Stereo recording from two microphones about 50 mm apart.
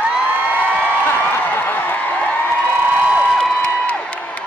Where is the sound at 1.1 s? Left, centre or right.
Left.